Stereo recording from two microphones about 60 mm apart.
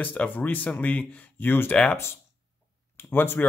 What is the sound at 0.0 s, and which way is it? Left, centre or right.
Speech, left.